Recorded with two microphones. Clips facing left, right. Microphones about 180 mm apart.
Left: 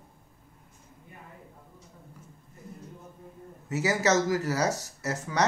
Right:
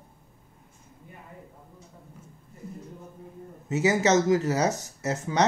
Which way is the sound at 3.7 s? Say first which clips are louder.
Right 3 dB; 20° right (ahead or behind).